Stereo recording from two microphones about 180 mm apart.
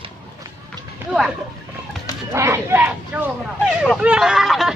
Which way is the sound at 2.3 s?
15° right (ahead or behind).